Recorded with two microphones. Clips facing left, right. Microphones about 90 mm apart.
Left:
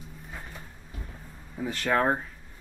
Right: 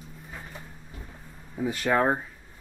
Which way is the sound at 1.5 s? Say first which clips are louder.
Right 2 dB; 10° right (ahead or behind).